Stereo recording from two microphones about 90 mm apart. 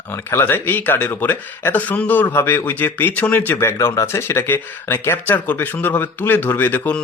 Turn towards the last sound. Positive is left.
turn(degrees=20)  # may be behind; listen again after turning